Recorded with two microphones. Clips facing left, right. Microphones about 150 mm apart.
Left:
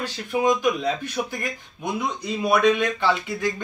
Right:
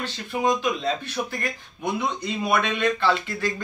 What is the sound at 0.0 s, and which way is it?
Speech, 15° left (ahead or behind).